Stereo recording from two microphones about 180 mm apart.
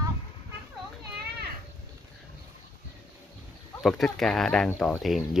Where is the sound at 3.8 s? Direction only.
Centre (ahead or behind).